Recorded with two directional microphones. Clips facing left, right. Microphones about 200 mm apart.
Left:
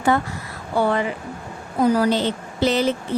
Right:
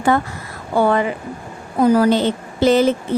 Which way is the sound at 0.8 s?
50° right (ahead or behind).